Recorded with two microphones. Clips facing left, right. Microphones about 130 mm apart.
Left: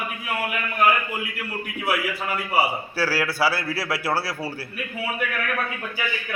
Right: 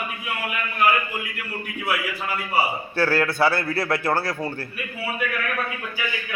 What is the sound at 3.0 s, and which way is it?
A man's voice, 5° left (ahead or behind).